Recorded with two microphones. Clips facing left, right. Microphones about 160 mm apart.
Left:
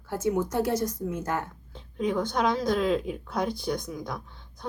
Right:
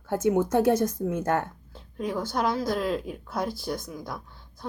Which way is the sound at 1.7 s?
5° right (ahead or behind).